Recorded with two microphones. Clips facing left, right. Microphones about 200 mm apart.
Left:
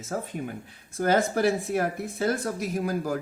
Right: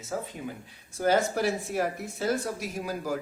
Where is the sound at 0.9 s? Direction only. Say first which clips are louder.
Left 1 dB; 55° left (ahead or behind).